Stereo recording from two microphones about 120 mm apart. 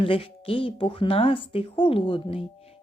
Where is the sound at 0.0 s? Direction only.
50° left (ahead or behind).